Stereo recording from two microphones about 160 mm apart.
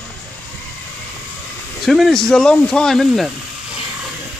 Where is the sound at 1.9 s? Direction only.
Centre (ahead or behind).